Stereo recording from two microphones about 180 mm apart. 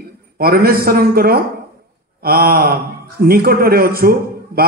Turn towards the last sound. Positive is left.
turn(degrees=-55)  # may be behind; listen again after turning